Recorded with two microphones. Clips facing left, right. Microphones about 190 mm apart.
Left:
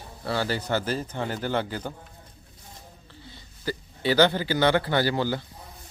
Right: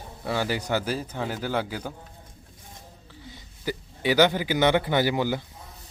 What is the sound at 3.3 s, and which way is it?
A man's voice, 15° right (ahead or behind).